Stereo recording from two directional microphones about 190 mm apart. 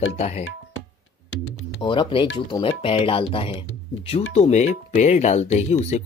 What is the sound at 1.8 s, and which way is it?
Speech, 25° left (ahead or behind).